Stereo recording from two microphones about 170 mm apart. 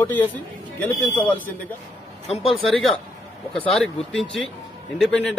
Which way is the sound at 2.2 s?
40° left (ahead or behind).